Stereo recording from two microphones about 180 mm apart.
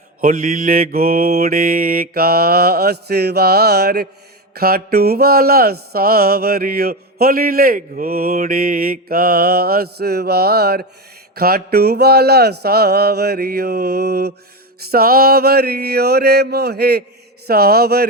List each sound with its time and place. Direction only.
0.2 s mantra: 50° right (ahead or behind)